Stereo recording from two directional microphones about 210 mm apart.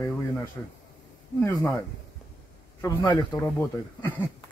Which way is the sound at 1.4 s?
10° left (ahead or behind).